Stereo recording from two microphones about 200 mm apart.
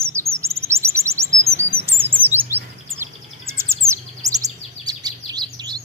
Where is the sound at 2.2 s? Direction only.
10° right (ahead or behind).